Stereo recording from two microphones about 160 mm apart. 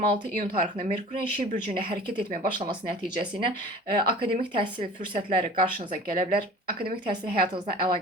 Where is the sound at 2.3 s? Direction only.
55° right (ahead or behind).